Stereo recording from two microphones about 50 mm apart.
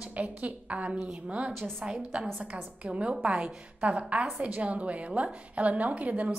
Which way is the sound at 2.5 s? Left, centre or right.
Right.